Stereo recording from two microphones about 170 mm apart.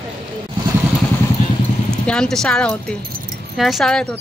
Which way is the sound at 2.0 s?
5° left (ahead or behind).